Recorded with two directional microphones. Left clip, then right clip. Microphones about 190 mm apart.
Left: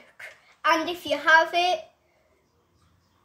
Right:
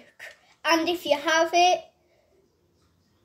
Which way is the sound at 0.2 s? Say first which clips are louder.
Left 4 dB; 5° right (ahead or behind).